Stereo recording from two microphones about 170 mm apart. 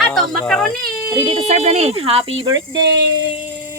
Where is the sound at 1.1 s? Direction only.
30° right (ahead or behind).